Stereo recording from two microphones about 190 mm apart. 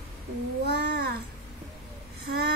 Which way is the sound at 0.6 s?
60° right (ahead or behind).